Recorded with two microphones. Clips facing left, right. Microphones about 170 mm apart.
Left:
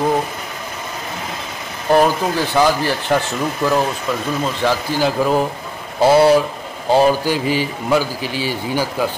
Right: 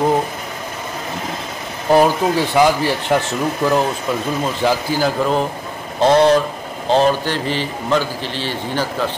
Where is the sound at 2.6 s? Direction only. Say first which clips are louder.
Even; 10° right (ahead or behind).